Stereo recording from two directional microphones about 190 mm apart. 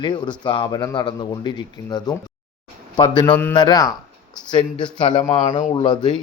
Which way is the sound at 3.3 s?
10° left (ahead or behind).